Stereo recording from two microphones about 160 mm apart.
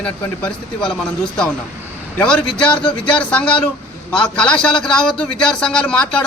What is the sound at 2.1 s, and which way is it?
A man's voice, 5° left (ahead or behind).